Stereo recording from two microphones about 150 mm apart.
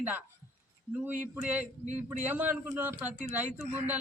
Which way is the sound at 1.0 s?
10° right (ahead or behind).